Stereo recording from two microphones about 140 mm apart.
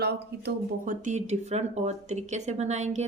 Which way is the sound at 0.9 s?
60° right (ahead or behind).